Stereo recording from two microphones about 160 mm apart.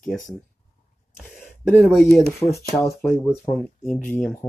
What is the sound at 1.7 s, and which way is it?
Speech, 5° left (ahead or behind).